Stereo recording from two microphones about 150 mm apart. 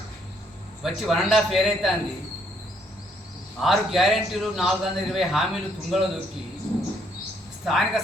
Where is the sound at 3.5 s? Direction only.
Centre (ahead or behind).